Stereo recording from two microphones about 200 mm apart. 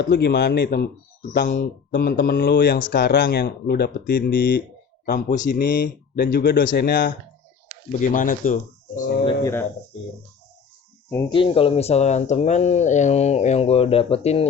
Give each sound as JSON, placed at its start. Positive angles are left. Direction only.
{"t": 0.0, "sound": "speech", "side_deg": 60}
{"t": 5.0, "sound": "speech", "side_deg": 40}
{"t": 5.5, "sound": "speech", "side_deg": 55}
{"t": 9.2, "sound": "speech", "side_deg": 15}
{"t": 11.3, "sound": "speech", "side_deg": 25}